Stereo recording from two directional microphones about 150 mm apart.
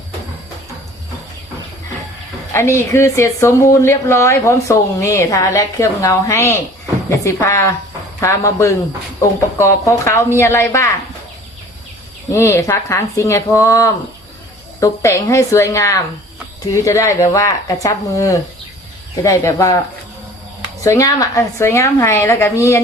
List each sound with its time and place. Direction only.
2.5 s a woman's voice: 15° left (ahead or behind)
12.3 s a woman's voice: 15° left (ahead or behind)
20.8 s a woman's voice: 20° left (ahead or behind)